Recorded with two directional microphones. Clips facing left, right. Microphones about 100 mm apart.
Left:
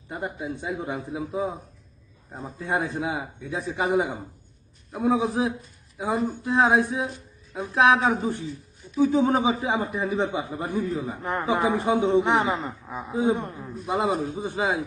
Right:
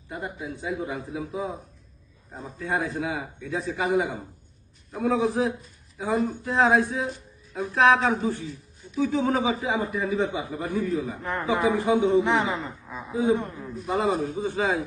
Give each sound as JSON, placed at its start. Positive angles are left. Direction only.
{"t": 0.1, "sound": "a man's voice", "side_deg": 25}
{"t": 2.6, "sound": "a man's voice", "side_deg": 20}